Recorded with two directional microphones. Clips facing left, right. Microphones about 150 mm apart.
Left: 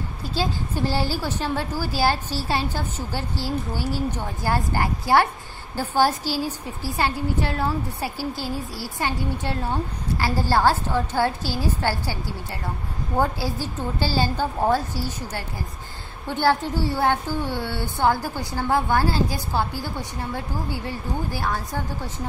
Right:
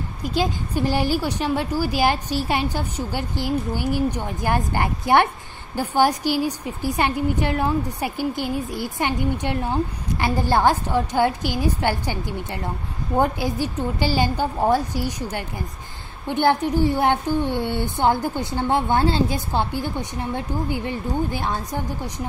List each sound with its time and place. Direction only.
0.2 s a woman's voice: 15° right (ahead or behind)